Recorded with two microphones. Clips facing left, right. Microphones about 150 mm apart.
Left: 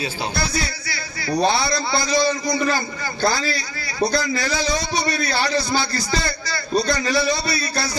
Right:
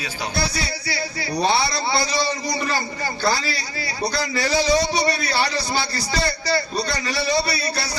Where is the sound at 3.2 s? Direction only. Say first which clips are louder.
Left 2 dB; 35° right (ahead or behind).